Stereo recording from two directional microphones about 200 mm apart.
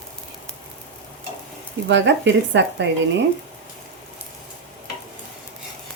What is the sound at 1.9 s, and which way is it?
Speech, 65° right (ahead or behind).